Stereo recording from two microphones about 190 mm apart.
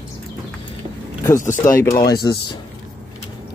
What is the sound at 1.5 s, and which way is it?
Speech, 15° left (ahead or behind).